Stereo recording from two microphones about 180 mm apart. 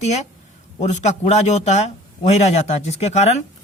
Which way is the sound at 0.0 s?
40° left (ahead or behind).